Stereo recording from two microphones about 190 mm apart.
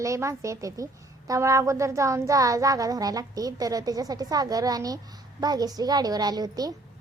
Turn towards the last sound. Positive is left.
turn(degrees=-20)  # may be behind; listen again after turning